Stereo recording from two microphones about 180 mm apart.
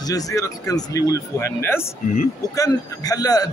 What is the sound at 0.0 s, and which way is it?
A man's voice, 20° left (ahead or behind).